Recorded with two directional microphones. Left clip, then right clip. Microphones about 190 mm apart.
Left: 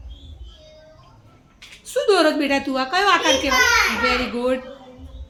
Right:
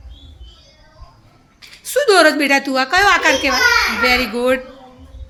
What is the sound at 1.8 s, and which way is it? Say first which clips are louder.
A woman's voice: right 6 dB; 10° right (ahead or behind).